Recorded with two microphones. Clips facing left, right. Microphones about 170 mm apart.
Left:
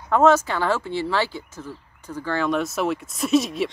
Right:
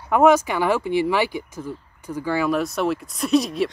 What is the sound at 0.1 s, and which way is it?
Speech, 15° right (ahead or behind).